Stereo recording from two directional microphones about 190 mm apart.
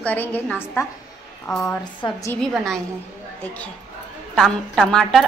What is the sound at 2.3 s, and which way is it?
Speech, 5° left (ahead or behind).